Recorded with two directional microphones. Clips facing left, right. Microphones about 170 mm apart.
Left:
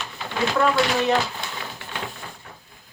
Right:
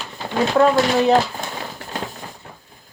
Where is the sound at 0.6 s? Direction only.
40° right (ahead or behind).